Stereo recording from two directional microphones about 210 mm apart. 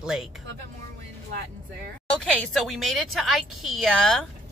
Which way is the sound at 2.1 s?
5° left (ahead or behind).